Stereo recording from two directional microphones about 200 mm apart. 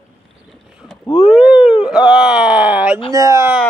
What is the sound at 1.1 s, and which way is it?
Speech, 5° right (ahead or behind).